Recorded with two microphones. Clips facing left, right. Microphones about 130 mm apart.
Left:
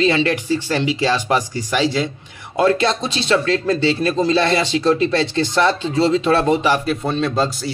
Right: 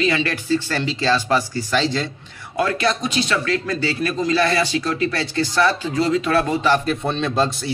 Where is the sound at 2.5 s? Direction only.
25° left (ahead or behind).